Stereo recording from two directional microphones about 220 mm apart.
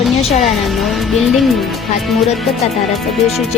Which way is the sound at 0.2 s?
25° left (ahead or behind).